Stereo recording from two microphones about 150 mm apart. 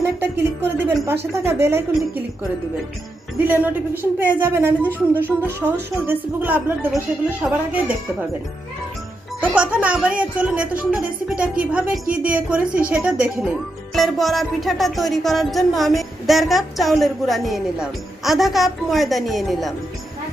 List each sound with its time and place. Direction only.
0.0 s a woman's voice: 15° right (ahead or behind)
3.3 s a woman's voice: 10° right (ahead or behind)
9.4 s a woman's voice: 10° right (ahead or behind)